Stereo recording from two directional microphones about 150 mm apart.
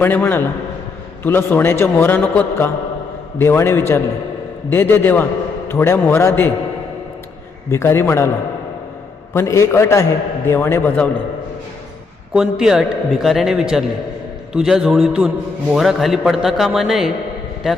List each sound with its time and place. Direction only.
0.0 s a man's voice: 15° left (ahead or behind)
7.7 s a man's voice: 15° left (ahead or behind)
9.3 s a man's voice: 20° left (ahead or behind)
12.3 s a man's voice: 5° right (ahead or behind)